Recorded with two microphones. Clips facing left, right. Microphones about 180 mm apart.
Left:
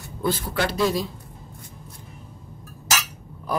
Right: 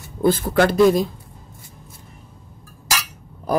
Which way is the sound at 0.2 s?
50° right (ahead or behind).